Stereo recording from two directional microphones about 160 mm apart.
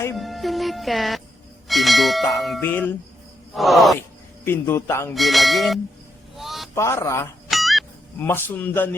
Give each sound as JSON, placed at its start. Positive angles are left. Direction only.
{"t": 0.2, "sound": "music", "side_deg": 0}
{"t": 1.6, "sound": "bell", "side_deg": 0}
{"t": 2.6, "sound": "a man's voice", "side_deg": 10}
{"t": 3.5, "sound": "bell", "side_deg": 0}
{"t": 4.4, "sound": "a man's voice", "side_deg": 15}
{"t": 5.1, "sound": "bell", "side_deg": 0}
{"t": 6.3, "sound": "a sound", "side_deg": 0}
{"t": 6.7, "sound": "a man's voice", "side_deg": 20}
{"t": 7.5, "sound": "music", "side_deg": 0}
{"t": 8.2, "sound": "a man's voice", "side_deg": 15}